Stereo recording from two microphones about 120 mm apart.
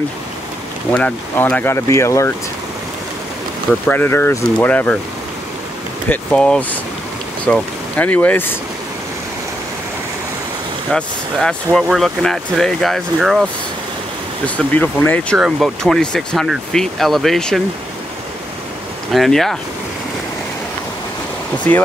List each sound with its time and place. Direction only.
0.9 s speech: 10° left (ahead or behind)
3.8 s speech: 15° left (ahead or behind)
6.0 s speech: 10° left (ahead or behind)
10.9 s speech: 5° left (ahead or behind)
14.4 s speech: 10° left (ahead or behind)
15.3 s speech: centre (ahead or behind)
19.1 s speech: centre (ahead or behind)